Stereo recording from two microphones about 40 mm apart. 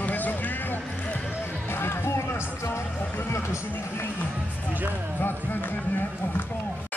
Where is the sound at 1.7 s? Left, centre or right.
Left.